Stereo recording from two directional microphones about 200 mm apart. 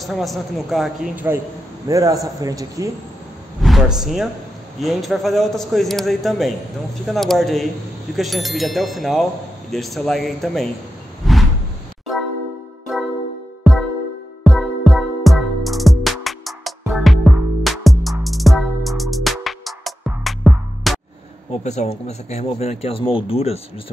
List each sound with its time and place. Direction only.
0.0 s a man's voice: centre (ahead or behind); by 2.9 s 15° right (ahead or behind)
3.6 s speech: centre (ahead or behind)
11.2 s a sound: centre (ahead or behind)
12.9 s music: centre (ahead or behind)
14.4 s music: centre (ahead or behind)
21.5 s speech: 35° left (ahead or behind)